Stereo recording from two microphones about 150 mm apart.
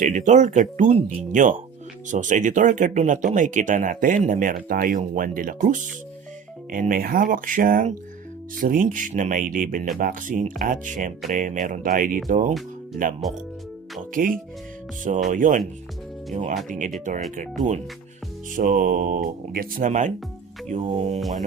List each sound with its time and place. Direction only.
0.0 s speech: 60° right (ahead or behind)
13.2 s mantra: centre (ahead or behind)
14.1 s speech: 65° right (ahead or behind)
18.8 s speech: 60° right (ahead or behind)
20.8 s music: 35° right (ahead or behind)
21.2 s mantra: centre (ahead or behind)